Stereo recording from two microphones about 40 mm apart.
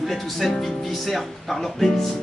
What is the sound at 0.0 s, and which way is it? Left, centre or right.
Speech, centre.